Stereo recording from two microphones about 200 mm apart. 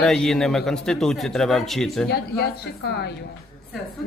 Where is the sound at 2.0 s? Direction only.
55° left (ahead or behind).